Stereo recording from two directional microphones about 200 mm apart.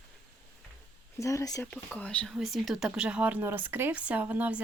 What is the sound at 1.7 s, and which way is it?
Speech, 5° left (ahead or behind).